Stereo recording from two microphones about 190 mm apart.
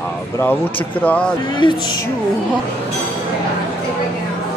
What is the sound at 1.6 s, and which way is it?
Speech, 25° left (ahead or behind).